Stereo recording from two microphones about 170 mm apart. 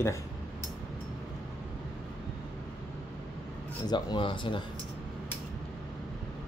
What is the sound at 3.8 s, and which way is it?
Speech, 25° left (ahead or behind).